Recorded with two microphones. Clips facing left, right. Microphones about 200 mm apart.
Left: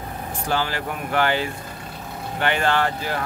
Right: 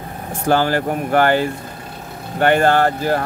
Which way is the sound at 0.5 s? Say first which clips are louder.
Right 9 dB; 50° right (ahead or behind).